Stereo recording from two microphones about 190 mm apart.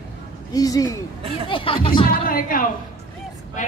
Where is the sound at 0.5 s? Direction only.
20° left (ahead or behind).